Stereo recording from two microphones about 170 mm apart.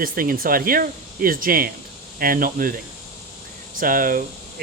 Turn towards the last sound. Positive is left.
turn(degrees=-55)  # may be behind; listen again after turning